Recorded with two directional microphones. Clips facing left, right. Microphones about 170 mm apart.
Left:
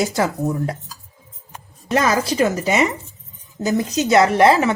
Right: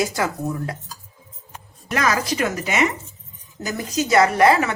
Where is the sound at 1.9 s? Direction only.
30° left (ahead or behind).